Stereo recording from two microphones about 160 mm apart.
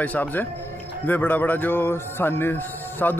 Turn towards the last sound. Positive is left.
turn(degrees=10)  # may be behind; listen again after turning